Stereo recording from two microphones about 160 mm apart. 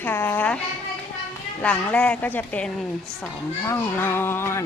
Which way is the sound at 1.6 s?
10° left (ahead or behind).